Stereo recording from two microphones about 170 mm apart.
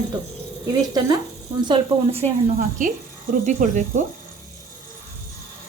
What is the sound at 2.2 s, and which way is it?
Speech, 45° right (ahead or behind).